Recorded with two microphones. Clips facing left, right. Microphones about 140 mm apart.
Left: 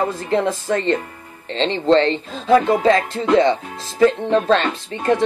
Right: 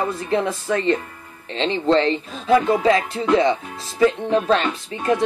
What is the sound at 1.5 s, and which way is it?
Speech, 30° left (ahead or behind).